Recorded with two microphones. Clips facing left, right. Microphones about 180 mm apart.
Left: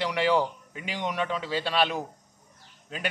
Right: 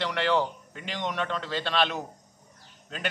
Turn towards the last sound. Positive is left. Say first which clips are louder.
# left 1 dB
turn(degrees=5)  # may be behind; listen again after turning